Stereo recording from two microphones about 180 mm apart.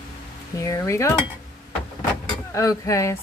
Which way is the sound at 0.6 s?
15° left (ahead or behind).